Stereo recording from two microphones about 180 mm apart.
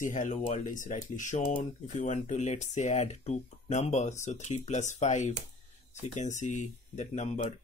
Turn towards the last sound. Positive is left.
turn(degrees=40)  # may be behind; listen again after turning